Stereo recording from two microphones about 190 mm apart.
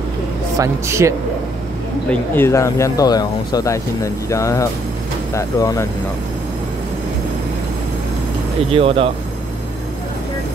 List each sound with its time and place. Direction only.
0.6 s speech: 15° right (ahead or behind)
2.0 s speech: 10° left (ahead or behind)
8.7 s speech: 30° right (ahead or behind)